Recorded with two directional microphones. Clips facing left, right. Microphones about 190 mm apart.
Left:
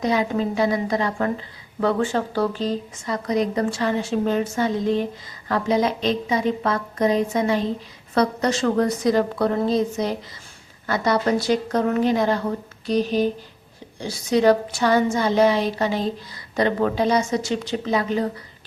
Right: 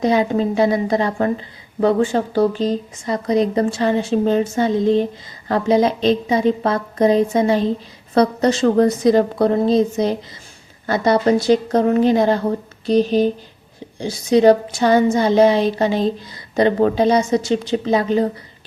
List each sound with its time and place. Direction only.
0.0 s a woman's voice: 30° right (ahead or behind)